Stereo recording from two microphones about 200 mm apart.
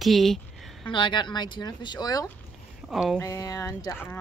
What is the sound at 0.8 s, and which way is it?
Speech, 25° left (ahead or behind).